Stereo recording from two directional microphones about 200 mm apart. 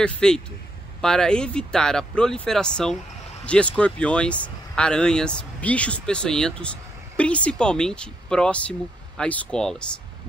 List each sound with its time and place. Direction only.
0.0 s speech: 5° left (ahead or behind)